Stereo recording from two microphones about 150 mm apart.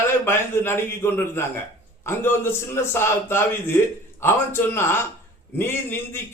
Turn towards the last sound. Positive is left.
turn(degrees=15)  # may be behind; listen again after turning